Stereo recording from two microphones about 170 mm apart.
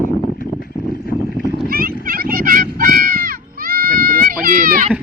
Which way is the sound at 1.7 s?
60° right (ahead or behind).